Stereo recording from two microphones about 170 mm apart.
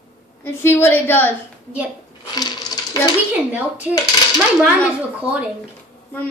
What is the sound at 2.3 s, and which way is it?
Coin, 20° left (ahead or behind).